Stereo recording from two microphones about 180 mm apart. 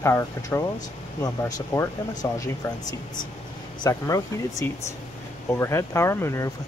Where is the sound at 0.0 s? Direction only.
15° left (ahead or behind).